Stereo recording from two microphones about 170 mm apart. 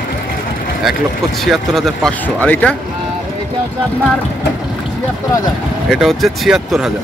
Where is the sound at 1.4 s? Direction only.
Centre (ahead or behind).